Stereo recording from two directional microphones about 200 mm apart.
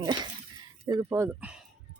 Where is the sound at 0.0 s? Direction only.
20° right (ahead or behind); by 1.6 s 5° right (ahead or behind).